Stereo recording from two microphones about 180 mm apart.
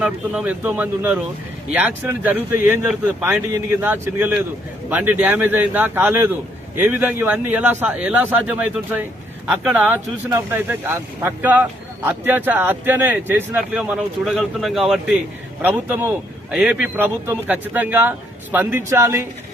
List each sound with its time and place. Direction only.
0.0 s speech: 5° right (ahead or behind)